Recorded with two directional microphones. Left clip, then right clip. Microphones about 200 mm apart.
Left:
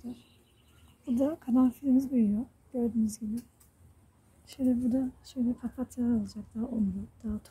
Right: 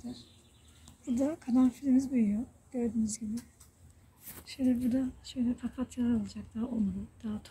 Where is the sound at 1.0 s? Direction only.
20° left (ahead or behind).